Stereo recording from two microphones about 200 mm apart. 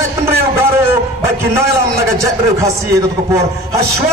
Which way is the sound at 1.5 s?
15° right (ahead or behind).